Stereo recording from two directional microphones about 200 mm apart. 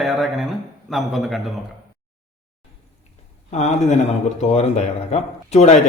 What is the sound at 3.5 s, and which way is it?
Speech, 35° left (ahead or behind).